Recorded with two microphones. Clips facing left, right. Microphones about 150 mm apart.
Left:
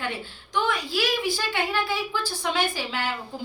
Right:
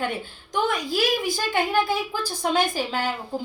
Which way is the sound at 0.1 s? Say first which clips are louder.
Right 1 dB; 45° right (ahead or behind).